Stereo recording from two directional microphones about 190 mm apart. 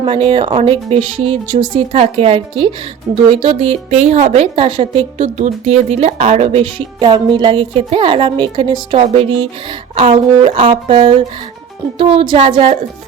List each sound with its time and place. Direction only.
0.0 s a woman's voice: 30° right (ahead or behind)